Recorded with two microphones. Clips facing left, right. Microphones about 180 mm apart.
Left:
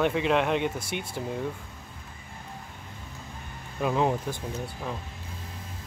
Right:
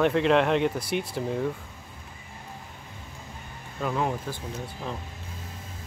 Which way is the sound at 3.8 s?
20° left (ahead or behind).